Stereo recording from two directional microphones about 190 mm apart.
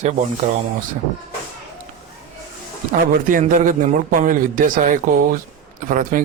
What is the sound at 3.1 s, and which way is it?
Speech, 45° right (ahead or behind).